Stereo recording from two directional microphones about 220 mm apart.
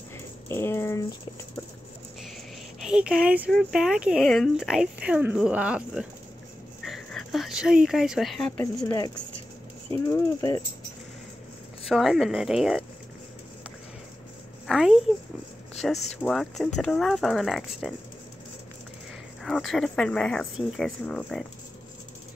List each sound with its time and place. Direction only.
0.5 s a sound: 10° left (ahead or behind)
2.8 s speech: 5° right (ahead or behind)
6.8 s a sound: centre (ahead or behind)
8.7 s speech: 15° left (ahead or behind)
11.9 s speech: centre (ahead or behind)
14.7 s speech: centre (ahead or behind)
15.7 s a sound: centre (ahead or behind)
16.1 s speech: centre (ahead or behind)
19.4 s speech: centre (ahead or behind)